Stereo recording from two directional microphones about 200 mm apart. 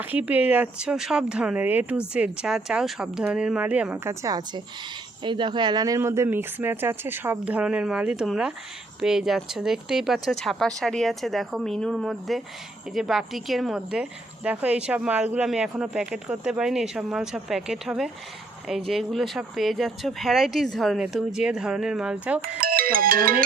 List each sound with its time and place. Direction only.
0.0 s speech: 10° right (ahead or behind)
22.4 s speech: 45° right (ahead or behind)